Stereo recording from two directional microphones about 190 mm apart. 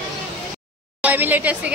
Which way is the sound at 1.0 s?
10° right (ahead or behind).